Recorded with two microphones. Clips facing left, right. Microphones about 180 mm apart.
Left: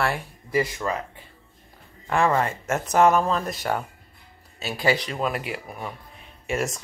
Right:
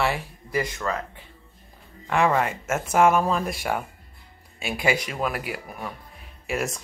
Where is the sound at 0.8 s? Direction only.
15° left (ahead or behind).